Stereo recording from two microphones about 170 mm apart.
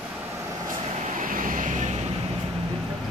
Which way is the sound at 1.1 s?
55° right (ahead or behind).